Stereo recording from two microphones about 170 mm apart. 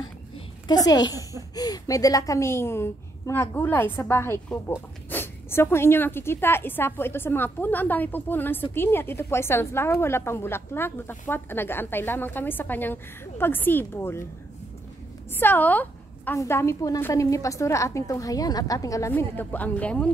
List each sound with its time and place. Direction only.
0.7 s a woman's voice: 25° left (ahead or behind)
15.3 s a woman's voice: 10° left (ahead or behind)